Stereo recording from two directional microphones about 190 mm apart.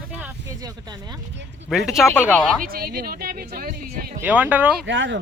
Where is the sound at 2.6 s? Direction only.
50° right (ahead or behind).